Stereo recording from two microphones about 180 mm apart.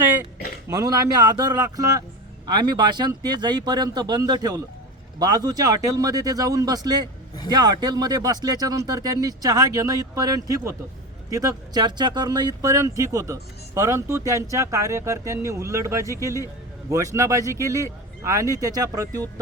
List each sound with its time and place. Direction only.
0.7 s speech: 20° right (ahead or behind)